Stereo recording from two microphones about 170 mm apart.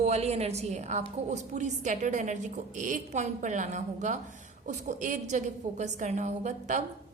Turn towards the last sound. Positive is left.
turn(degrees=-45)  # may be behind; listen again after turning